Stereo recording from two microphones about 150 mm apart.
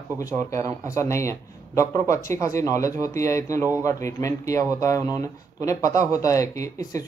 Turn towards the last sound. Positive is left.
turn(degrees=20)  # may be behind; listen again after turning